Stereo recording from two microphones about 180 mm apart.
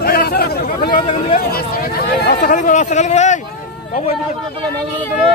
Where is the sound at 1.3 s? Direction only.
55° left (ahead or behind).